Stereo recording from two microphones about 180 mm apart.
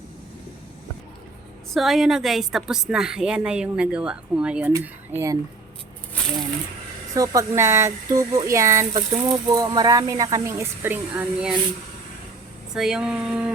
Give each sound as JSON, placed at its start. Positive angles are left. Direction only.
{"t": 1.7, "sound": "a woman's voice", "side_deg": 0}
{"t": 4.7, "sound": "speech", "side_deg": -15}
{"t": 7.2, "sound": "speech", "side_deg": -15}
{"t": 12.7, "sound": "a woman's voice", "side_deg": -5}